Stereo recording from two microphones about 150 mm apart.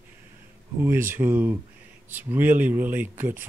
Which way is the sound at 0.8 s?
15° right (ahead or behind).